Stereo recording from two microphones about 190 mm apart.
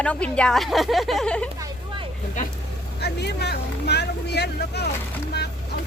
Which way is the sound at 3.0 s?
60° left (ahead or behind).